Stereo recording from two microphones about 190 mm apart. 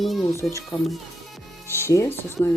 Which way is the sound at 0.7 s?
20° left (ahead or behind).